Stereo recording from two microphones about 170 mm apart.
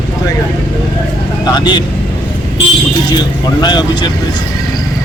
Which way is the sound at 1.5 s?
25° left (ahead or behind).